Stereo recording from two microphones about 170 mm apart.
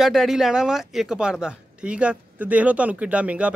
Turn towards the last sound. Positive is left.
turn(degrees=-5)  # may be behind; listen again after turning